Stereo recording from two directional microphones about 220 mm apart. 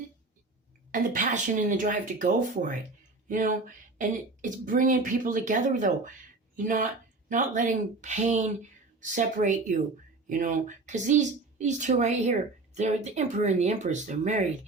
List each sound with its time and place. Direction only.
0.9 s speech: 35° right (ahead or behind)